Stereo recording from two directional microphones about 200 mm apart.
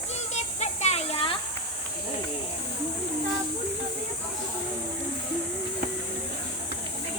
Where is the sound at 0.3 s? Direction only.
35° left (ahead or behind).